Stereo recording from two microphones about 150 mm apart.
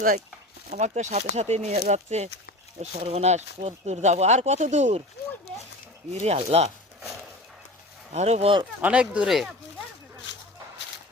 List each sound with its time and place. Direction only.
0.7 s speech: 50° right (ahead or behind)
6.1 s speech: 45° right (ahead or behind)
8.1 s speech: 45° right (ahead or behind)
8.8 s speech: 10° right (ahead or behind)